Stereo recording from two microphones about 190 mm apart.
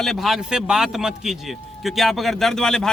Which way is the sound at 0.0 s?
Centre (ahead or behind).